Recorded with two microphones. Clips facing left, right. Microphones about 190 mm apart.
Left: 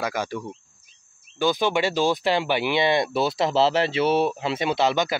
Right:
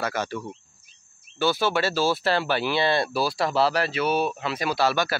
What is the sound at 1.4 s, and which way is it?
Speech, 15° left (ahead or behind).